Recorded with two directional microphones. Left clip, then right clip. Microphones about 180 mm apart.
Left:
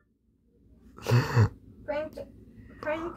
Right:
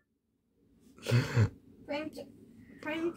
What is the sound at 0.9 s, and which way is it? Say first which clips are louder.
Throat clearing: left 5 dB; centre (ahead or behind).